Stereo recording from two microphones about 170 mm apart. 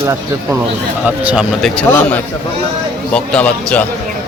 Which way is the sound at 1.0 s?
10° right (ahead or behind).